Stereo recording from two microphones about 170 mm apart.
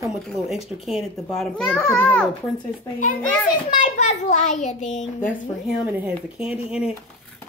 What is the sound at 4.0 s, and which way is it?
A child's voice, 45° left (ahead or behind).